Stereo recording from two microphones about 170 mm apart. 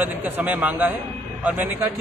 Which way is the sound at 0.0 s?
10° right (ahead or behind).